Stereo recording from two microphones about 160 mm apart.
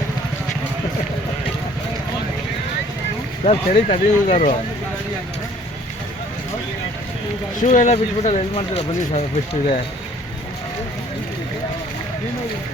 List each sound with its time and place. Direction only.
3.4 s speech: 50° left (ahead or behind)
7.6 s speech: 50° left (ahead or behind)